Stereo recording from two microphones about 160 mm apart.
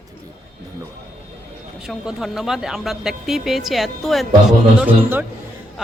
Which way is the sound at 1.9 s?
Centre (ahead or behind).